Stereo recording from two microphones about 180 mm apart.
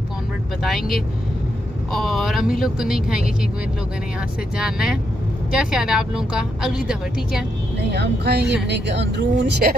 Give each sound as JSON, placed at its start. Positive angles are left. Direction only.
{"t": 0.6, "sound": "a woman's voice", "side_deg": 0}
{"t": 4.6, "sound": "a woman's voice", "side_deg": -5}
{"t": 7.9, "sound": "speech", "side_deg": -65}